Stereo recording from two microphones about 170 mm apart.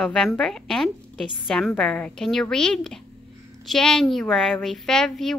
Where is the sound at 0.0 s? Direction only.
5° left (ahead or behind).